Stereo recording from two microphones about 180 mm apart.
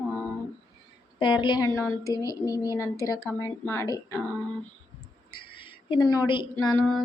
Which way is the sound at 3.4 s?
15° left (ahead or behind).